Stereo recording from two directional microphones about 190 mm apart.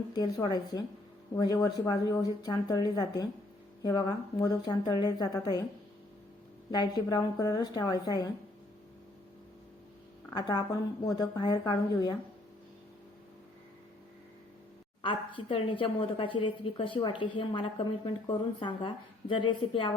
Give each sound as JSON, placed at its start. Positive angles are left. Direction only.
{"t": 0.1, "sound": "speech", "side_deg": 20}
{"t": 6.7, "sound": "speech", "side_deg": 20}
{"t": 10.2, "sound": "speech", "side_deg": 20}
{"t": 15.0, "sound": "speech", "side_deg": 25}